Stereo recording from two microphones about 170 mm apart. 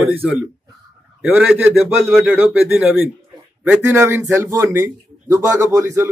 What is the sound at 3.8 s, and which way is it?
Speech, 15° right (ahead or behind).